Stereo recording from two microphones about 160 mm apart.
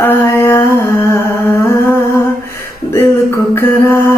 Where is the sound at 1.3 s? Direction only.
15° left (ahead or behind).